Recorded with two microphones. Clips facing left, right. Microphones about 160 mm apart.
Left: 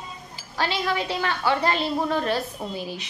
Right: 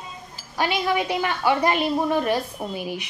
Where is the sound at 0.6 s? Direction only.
15° right (ahead or behind).